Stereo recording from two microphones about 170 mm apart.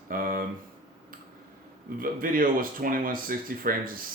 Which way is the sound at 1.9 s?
55° right (ahead or behind).